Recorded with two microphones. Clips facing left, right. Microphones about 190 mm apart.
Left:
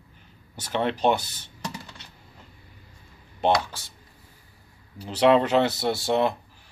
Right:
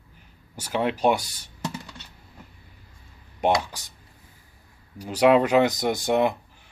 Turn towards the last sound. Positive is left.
turn(degrees=-15)  # may be behind; listen again after turning